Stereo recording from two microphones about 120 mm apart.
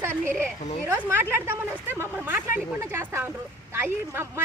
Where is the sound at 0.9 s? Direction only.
20° right (ahead or behind).